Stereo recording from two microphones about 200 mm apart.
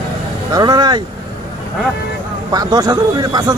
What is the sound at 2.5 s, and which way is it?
Speech, 20° right (ahead or behind).